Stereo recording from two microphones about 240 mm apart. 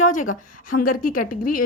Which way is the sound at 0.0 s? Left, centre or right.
Left.